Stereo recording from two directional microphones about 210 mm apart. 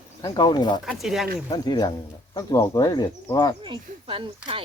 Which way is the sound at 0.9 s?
Centre (ahead or behind).